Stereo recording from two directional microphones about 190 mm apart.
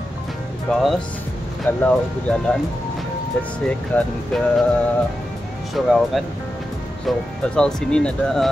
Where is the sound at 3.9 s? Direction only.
10° left (ahead or behind).